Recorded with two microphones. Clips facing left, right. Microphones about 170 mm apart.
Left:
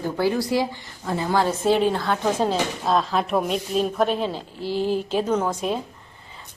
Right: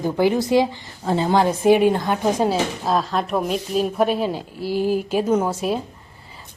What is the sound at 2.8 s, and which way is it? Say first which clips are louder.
A woman's voice: even; centre (ahead or behind).